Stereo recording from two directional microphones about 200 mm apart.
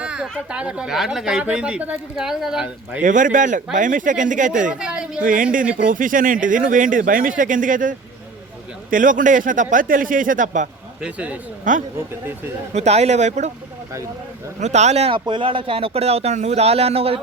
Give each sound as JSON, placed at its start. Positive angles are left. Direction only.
{"t": 0.0, "sound": "speech", "side_deg": -5}
{"t": 3.0, "sound": "speech", "side_deg": -40}
{"t": 4.7, "sound": "speech", "side_deg": -5}
{"t": 5.2, "sound": "speech", "side_deg": -45}
{"t": 11.0, "sound": "a man's voice", "side_deg": -5}
{"t": 11.7, "sound": "speech", "side_deg": -40}
{"t": 14.6, "sound": "speech", "side_deg": -35}